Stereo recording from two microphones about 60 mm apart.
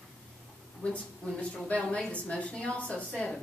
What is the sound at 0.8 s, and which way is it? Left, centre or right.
A woman's voice, centre.